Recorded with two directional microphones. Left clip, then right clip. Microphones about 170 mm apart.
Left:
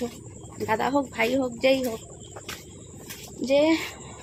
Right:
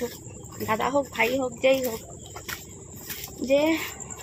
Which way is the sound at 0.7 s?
15° left (ahead or behind).